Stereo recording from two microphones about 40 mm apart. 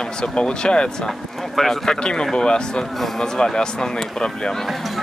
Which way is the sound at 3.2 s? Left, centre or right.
Centre.